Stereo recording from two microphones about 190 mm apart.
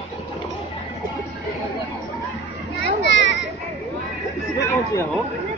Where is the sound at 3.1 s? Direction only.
70° left (ahead or behind).